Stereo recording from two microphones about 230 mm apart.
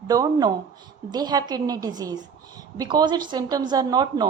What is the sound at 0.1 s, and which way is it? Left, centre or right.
Speech, centre.